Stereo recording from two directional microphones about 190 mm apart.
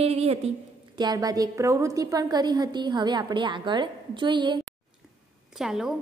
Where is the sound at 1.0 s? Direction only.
20° right (ahead or behind).